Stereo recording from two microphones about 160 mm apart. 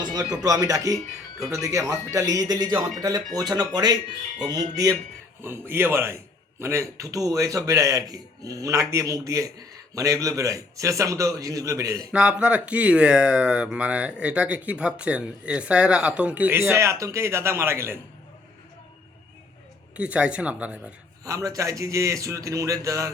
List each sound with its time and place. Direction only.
0.0 s speech: 25° right (ahead or behind)
11.9 s speech: 5° right (ahead or behind)
20.0 s speech: 5° right (ahead or behind)
21.2 s speech: 20° right (ahead or behind)